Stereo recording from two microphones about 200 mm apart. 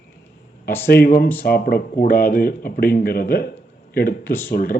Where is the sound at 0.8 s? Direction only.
50° left (ahead or behind).